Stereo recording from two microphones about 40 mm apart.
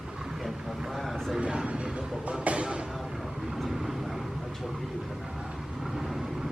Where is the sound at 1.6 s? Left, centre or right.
Right.